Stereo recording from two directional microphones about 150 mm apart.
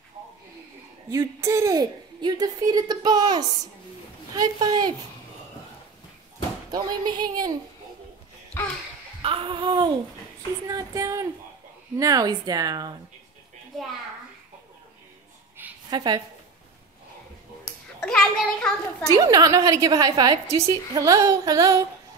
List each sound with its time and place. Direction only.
1.1 s a woman's voice: 20° right (ahead or behind)
6.7 s a woman's voice: 30° right (ahead or behind)
8.6 s a sound: 15° left (ahead or behind)
9.2 s a sound: 35° right (ahead or behind)
10.7 s a woman's voice: 20° right (ahead or behind)
15.6 s a sound: 15° right (ahead or behind)
15.9 s a woman's voice: 30° right (ahead or behind)
18.0 s a child's voice: 5° left (ahead or behind)
19.1 s a woman's voice: 25° right (ahead or behind)